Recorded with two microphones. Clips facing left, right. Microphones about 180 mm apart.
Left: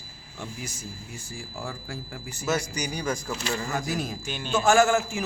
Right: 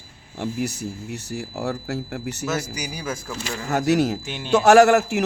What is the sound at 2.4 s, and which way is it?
Speech, 5° right (ahead or behind).